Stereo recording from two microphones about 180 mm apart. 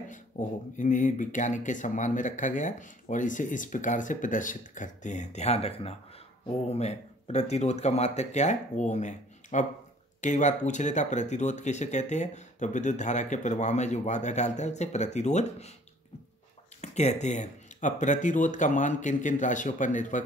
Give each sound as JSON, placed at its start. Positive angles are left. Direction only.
{"t": 0.1, "sound": "speech", "side_deg": 45}
{"t": 16.8, "sound": "speech", "side_deg": 40}